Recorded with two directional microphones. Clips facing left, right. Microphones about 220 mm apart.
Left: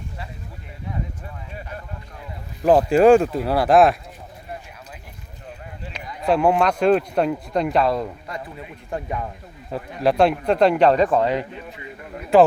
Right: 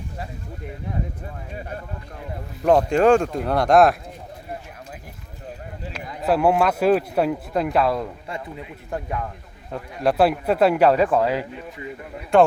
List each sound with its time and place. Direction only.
2.6 s speech: 5° left (ahead or behind)
5.9 s speech: 5° right (ahead or behind)
9.0 s speech: 10° left (ahead or behind)